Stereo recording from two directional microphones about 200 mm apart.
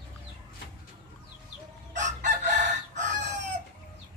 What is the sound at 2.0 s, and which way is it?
Chicken, 40° right (ahead or behind).